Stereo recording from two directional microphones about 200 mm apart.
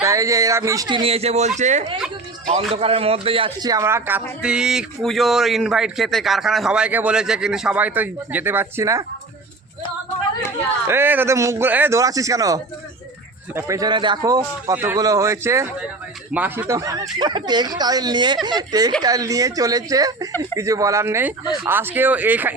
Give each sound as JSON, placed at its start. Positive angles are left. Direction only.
{"t": 0.0, "sound": "a man's voice", "side_deg": -15}
{"t": 10.8, "sound": "a man's voice", "side_deg": -10}